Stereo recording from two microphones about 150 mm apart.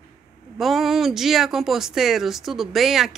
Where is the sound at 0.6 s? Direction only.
Centre (ahead or behind).